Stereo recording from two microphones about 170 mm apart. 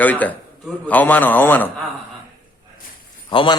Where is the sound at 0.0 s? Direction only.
10° left (ahead or behind).